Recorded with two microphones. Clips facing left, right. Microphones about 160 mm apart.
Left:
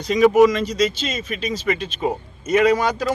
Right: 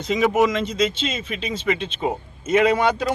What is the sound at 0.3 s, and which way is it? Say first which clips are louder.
Speech: left 4 dB; 25° right (ahead or behind).